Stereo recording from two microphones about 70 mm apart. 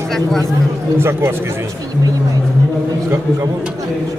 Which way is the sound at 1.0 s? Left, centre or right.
Right.